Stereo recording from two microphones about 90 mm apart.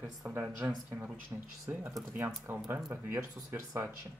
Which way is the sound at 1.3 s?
30° right (ahead or behind).